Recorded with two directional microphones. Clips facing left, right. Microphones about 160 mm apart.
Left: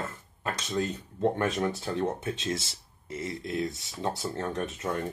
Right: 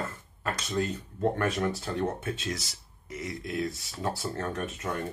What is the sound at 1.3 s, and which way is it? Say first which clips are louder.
Speech: even; 20° left (ahead or behind).